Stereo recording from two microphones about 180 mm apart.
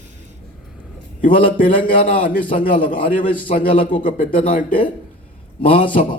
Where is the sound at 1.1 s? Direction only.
50° left (ahead or behind).